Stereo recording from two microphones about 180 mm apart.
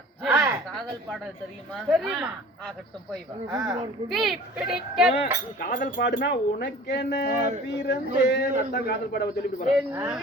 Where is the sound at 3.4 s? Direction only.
15° right (ahead or behind).